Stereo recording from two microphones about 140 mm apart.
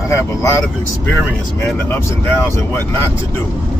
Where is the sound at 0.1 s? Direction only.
20° left (ahead or behind).